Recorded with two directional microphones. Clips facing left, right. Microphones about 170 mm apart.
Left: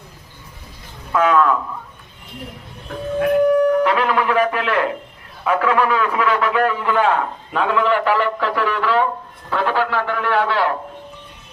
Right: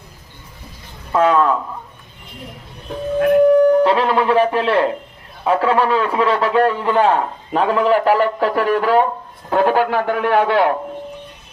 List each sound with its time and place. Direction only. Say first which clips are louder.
1.1 s a man's voice: right 1 dB; 30° right (ahead or behind)
3.4 s a man's voice: right 4 dB; 30° right (ahead or behind); by 10.7 s 50° right (ahead or behind)